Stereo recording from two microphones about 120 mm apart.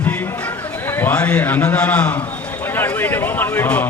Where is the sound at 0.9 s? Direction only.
15° left (ahead or behind).